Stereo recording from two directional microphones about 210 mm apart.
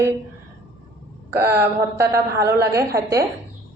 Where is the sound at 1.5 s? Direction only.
10° right (ahead or behind).